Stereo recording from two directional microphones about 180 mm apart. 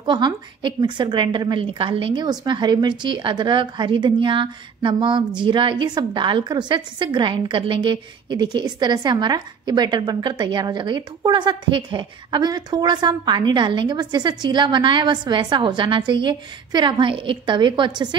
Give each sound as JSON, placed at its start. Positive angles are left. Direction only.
{"t": 0.0, "sound": "a woman's voice", "side_deg": -25}